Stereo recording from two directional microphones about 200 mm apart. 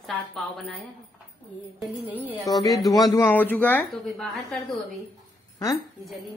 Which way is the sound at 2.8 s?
20° left (ahead or behind).